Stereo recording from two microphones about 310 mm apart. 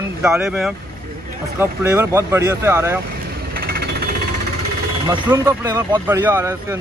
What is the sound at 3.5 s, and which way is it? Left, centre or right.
Jackhammer, right.